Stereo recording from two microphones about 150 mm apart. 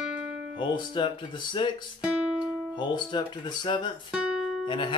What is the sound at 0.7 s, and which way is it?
Speech, 30° left (ahead or behind).